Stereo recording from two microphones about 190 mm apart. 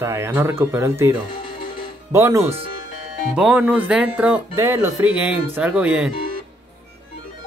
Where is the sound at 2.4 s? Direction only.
30° right (ahead or behind).